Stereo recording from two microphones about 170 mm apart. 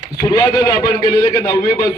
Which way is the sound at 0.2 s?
25° left (ahead or behind).